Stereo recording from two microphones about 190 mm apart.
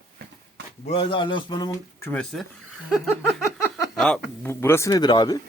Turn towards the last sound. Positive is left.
turn(degrees=20)  # may be behind; listen again after turning